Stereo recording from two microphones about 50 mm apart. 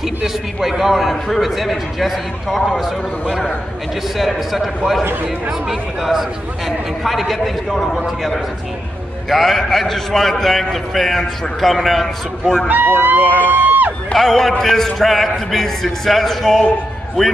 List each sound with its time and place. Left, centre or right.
0.0 s a man's voice: centre
4.2 s a man's voice: centre
9.3 s a man's voice: centre
12.6 s speech: right
13.4 s music: right
14.1 s a man's voice: centre